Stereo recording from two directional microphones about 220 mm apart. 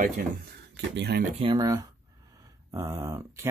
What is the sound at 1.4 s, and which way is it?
Speech, 20° right (ahead or behind).